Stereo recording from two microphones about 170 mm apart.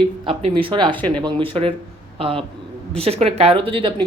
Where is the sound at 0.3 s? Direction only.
30° right (ahead or behind).